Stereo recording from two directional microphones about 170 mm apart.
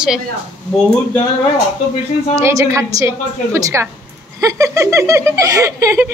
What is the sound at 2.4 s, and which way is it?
Speech, 15° right (ahead or behind).